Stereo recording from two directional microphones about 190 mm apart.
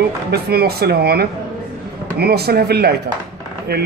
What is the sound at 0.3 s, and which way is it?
A man's voice, 55° right (ahead or behind).